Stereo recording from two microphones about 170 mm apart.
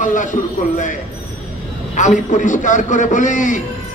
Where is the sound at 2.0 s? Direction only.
50° left (ahead or behind).